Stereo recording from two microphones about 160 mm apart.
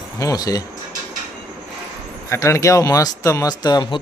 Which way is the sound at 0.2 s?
20° left (ahead or behind).